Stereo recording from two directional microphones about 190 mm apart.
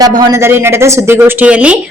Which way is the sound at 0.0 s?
20° right (ahead or behind).